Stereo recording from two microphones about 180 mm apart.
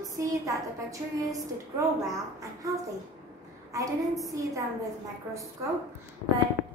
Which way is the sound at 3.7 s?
20° right (ahead or behind).